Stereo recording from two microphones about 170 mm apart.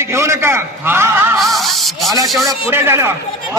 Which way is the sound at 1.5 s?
Centre (ahead or behind).